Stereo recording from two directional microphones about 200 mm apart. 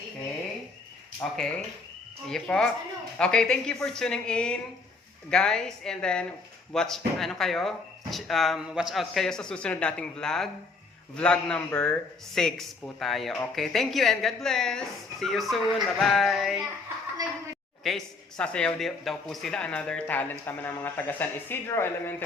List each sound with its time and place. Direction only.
2.2 s speech: 5° left (ahead or behind)
17.2 s a woman's voice: 20° right (ahead or behind)
17.8 s speech: 5° left (ahead or behind)